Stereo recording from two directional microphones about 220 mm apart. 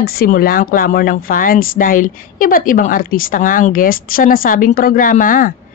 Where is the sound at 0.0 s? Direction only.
45° left (ahead or behind).